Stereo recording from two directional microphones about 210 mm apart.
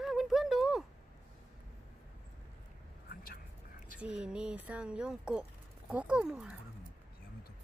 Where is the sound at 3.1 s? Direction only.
45° left (ahead or behind).